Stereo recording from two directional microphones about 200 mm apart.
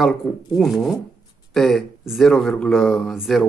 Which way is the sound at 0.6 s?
Centre (ahead or behind).